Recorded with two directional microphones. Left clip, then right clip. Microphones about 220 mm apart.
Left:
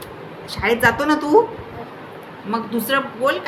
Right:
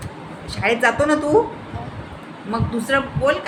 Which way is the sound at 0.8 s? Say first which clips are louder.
Left 1 dB; 15° left (ahead or behind).